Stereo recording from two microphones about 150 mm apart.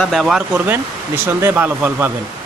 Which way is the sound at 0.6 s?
15° right (ahead or behind).